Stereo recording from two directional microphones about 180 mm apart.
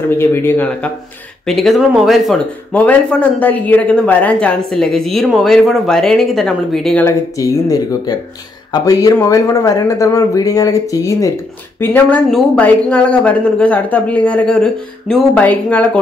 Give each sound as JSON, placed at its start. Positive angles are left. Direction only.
{"t": 0.1, "sound": "speech", "side_deg": 15}
{"t": 7.1, "sound": "speech", "side_deg": 20}